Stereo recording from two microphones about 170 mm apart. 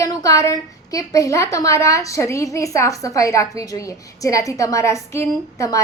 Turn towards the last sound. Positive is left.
turn(degrees=20)  # may be behind; listen again after turning